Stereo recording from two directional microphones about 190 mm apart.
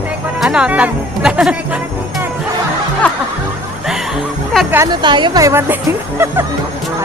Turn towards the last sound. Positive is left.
turn(degrees=-10)  # may be behind; listen again after turning